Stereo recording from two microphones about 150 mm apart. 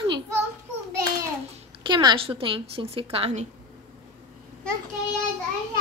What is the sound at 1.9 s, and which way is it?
Speech, 30° right (ahead or behind).